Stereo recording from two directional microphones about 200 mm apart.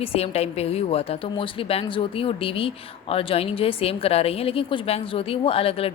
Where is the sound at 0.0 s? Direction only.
30° left (ahead or behind).